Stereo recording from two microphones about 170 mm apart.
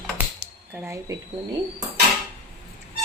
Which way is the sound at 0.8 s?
15° right (ahead or behind).